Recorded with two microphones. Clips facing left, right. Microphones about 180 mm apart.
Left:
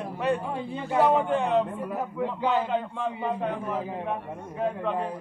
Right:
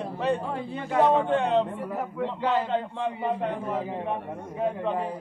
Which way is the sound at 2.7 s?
20° right (ahead or behind).